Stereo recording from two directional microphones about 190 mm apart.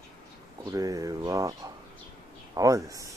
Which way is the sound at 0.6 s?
15° right (ahead or behind).